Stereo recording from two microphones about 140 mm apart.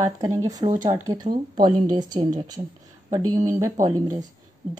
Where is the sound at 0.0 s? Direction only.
25° right (ahead or behind).